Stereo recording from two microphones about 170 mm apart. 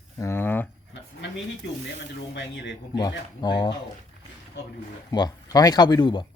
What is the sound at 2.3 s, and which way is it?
Speech, 85° left.